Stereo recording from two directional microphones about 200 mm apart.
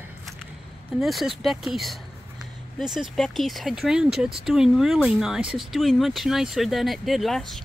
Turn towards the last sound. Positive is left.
turn(degrees=0)  # may be behind; listen again after turning